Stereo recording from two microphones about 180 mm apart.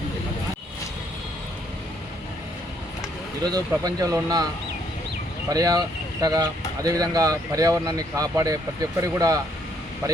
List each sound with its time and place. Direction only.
3.4 s speech: 20° right (ahead or behind)
5.5 s speech: 20° right (ahead or behind)